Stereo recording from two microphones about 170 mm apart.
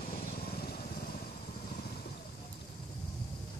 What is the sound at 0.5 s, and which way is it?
Vehicle, 65° left (ahead or behind).